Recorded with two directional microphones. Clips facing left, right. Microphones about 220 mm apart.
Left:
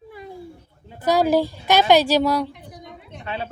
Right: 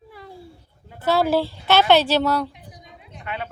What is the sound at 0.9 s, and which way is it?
A woman's voice, 15° left (ahead or behind).